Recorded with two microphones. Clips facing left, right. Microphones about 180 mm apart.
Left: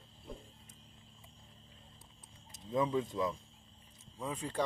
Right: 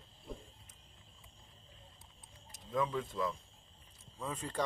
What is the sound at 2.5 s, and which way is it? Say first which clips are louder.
Speech: left 3 dB; 20° left (ahead or behind).